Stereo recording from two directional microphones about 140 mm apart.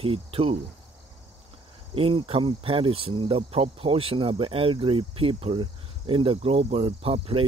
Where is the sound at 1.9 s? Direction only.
40° right (ahead or behind).